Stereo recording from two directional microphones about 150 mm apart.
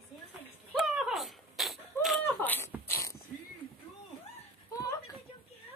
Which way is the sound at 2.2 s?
10° left (ahead or behind).